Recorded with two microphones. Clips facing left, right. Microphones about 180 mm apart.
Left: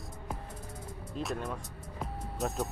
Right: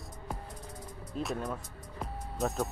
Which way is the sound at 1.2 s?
5° left (ahead or behind).